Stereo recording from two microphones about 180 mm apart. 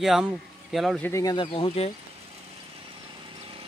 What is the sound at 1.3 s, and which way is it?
Speech, 25° left (ahead or behind).